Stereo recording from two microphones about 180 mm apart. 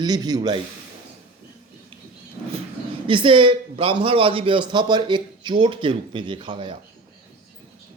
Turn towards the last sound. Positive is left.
turn(degrees=-25)  # may be behind; listen again after turning